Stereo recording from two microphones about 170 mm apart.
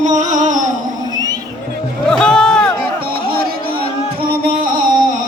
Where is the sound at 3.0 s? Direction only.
60° right (ahead or behind).